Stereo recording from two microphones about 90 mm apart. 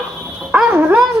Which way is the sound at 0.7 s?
20° right (ahead or behind).